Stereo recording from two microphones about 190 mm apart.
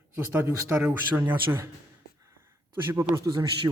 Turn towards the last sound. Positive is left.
turn(degrees=-25)  # may be behind; listen again after turning